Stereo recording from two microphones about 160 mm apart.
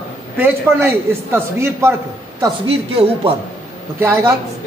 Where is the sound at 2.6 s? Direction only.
35° right (ahead or behind).